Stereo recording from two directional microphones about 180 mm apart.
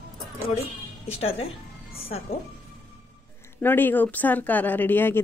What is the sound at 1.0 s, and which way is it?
Speech, 35° left (ahead or behind).